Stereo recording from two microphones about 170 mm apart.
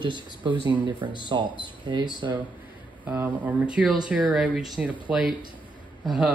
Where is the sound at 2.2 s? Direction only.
20° right (ahead or behind).